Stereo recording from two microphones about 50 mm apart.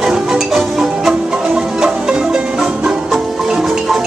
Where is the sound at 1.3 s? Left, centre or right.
Centre.